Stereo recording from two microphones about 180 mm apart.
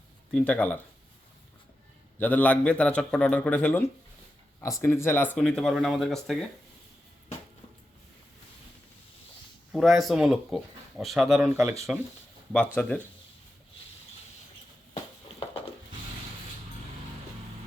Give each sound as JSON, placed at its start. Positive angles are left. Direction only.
{"t": 0.3, "sound": "a man's voice", "side_deg": 5}
{"t": 2.1, "sound": "a man's voice", "side_deg": 10}
{"t": 9.7, "sound": "speech", "side_deg": 0}
{"t": 11.5, "sound": "speech", "side_deg": -15}
{"t": 12.5, "sound": "a man's voice", "side_deg": 10}